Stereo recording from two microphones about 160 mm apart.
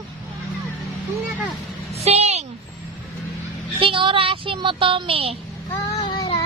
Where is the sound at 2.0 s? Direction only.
40° right (ahead or behind).